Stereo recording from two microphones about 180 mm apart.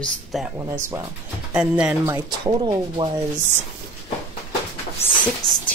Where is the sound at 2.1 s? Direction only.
25° right (ahead or behind).